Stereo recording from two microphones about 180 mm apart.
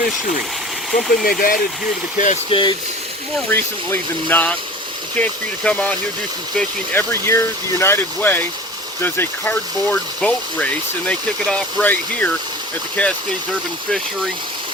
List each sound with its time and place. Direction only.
1.2 s speech: 55° left (ahead or behind)
2.1 s speech: 45° left (ahead or behind)
2.5 s speech: 25° left (ahead or behind)
3.5 s speech: 10° left (ahead or behind)